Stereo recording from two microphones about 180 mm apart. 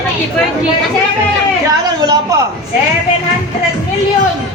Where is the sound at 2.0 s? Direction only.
20° right (ahead or behind).